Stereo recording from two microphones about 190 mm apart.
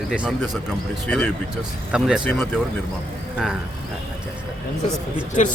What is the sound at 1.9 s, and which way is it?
Speech, 5° right (ahead or behind).